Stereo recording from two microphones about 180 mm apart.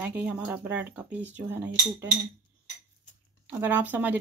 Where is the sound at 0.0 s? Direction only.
10° right (ahead or behind).